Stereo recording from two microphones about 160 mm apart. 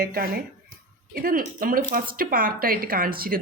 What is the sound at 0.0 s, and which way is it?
Speech, 70° right (ahead or behind).